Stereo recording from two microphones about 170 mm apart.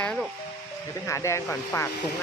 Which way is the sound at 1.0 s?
15° left (ahead or behind).